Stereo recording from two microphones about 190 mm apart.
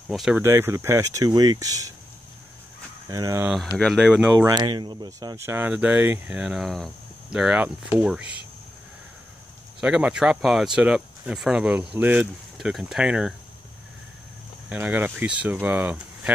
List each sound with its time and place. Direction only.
0.1 s speech: centre (ahead or behind)
0.4 s speech: 15° right (ahead or behind)
3.1 s speech: 20° right (ahead or behind)
3.7 s speech: centre (ahead or behind)
9.8 s speech: 5° right (ahead or behind)
14.7 s speech: 10° right (ahead or behind)